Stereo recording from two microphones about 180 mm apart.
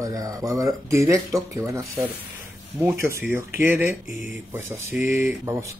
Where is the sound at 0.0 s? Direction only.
20° right (ahead or behind).